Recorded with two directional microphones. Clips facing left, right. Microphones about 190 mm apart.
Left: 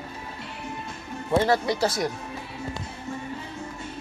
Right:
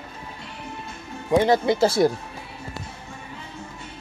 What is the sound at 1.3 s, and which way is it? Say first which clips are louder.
Speech: right 4 dB; 15° right (ahead or behind).